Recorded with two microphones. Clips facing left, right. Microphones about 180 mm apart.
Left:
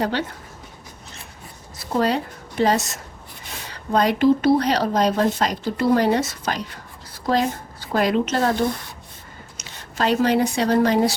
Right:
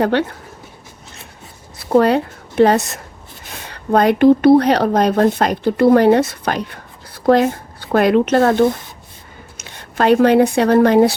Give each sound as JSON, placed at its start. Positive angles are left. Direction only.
{"t": 0.0, "sound": "speech", "side_deg": -60}
{"t": 1.9, "sound": "speech", "side_deg": -60}